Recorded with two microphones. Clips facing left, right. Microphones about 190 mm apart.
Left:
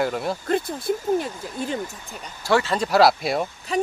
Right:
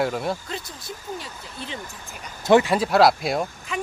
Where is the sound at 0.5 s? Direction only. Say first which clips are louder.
Left 12 dB; 55° left (ahead or behind).